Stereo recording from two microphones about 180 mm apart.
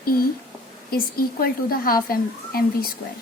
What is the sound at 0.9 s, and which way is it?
A woman's voice, 55° left (ahead or behind).